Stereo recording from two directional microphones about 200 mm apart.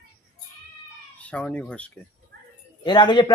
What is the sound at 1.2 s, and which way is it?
Speech, 5° left (ahead or behind).